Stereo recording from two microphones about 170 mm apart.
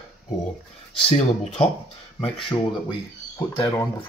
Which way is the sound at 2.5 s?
10° left (ahead or behind).